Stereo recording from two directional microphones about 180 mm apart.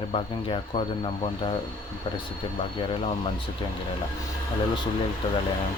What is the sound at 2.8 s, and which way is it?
Speech, 30° left (ahead or behind).